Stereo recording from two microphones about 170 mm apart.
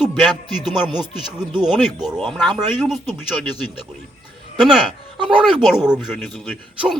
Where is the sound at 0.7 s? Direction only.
25° right (ahead or behind).